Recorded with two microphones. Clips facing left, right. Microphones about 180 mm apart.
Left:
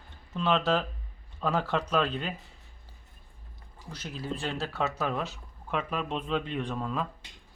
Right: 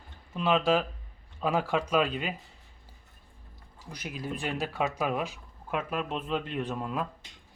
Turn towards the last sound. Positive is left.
turn(degrees=-10)  # may be behind; listen again after turning